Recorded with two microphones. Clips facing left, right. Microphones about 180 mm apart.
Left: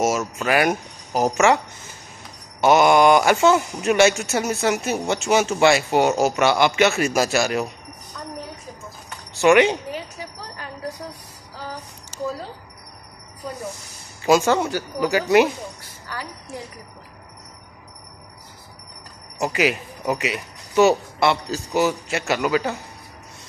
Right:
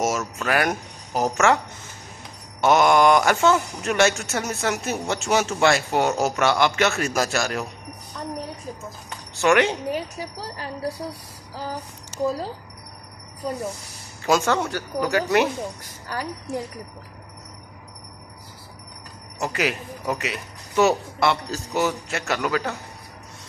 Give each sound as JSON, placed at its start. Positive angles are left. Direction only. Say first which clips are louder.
{"t": 0.2, "sound": "speech", "louder": "left 3 dB", "side_deg": 10}
{"t": 2.6, "sound": "speech", "louder": "left 2 dB", "side_deg": 5}
{"t": 9.4, "sound": "speech", "louder": "left 4 dB", "side_deg": 5}
{"t": 9.9, "sound": "speech", "louder": "right 3 dB", "side_deg": -40}
{"t": 14.2, "sound": "speech", "louder": "left 3 dB", "side_deg": 5}
{"t": 15.8, "sound": "a sound", "louder": "right 3 dB", "side_deg": -45}
{"t": 19.4, "sound": "speech", "louder": "left 4 dB", "side_deg": 5}